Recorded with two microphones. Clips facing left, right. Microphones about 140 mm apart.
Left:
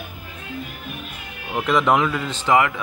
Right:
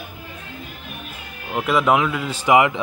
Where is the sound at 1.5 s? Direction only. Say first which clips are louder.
Even; 5° right (ahead or behind).